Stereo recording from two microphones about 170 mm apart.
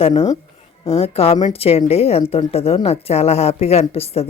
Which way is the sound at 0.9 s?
35° left (ahead or behind).